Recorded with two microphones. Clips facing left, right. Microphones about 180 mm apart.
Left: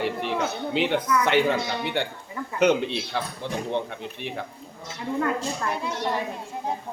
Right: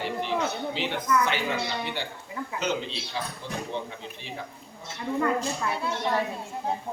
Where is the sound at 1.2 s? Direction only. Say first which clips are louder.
Left 6 dB; 60° left (ahead or behind).